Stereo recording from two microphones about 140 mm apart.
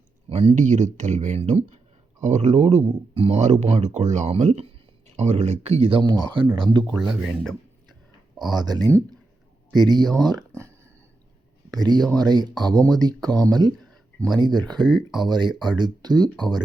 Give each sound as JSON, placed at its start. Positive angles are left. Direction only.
{"t": 0.3, "sound": "a sound", "side_deg": -45}
{"t": 0.5, "sound": "speech", "side_deg": -60}
{"t": 7.1, "sound": "speech", "side_deg": -5}
{"t": 8.4, "sound": "speech", "side_deg": -30}
{"t": 10.2, "sound": "a sound", "side_deg": -30}
{"t": 11.7, "sound": "speech", "side_deg": -30}